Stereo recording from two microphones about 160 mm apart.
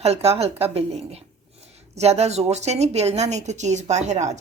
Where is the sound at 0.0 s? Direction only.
40° right (ahead or behind).